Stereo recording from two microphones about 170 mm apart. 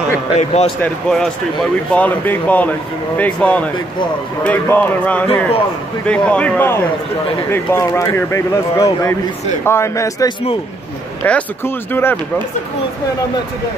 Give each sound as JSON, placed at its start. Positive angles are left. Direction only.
{"t": 0.4, "sound": "speech", "side_deg": 40}
{"t": 0.8, "sound": "a man's voice", "side_deg": 0}